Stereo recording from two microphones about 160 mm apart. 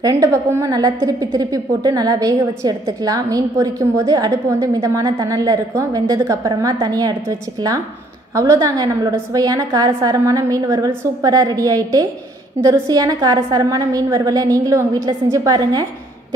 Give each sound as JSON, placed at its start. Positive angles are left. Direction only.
{"t": 0.0, "sound": "a woman's voice", "side_deg": -20}